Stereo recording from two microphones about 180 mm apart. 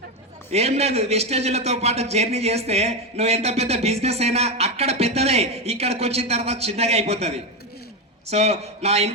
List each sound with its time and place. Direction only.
0.5 s a man's voice: 35° right (ahead or behind)